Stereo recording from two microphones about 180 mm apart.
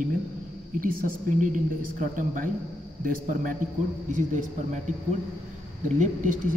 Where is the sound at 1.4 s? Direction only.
45° right (ahead or behind).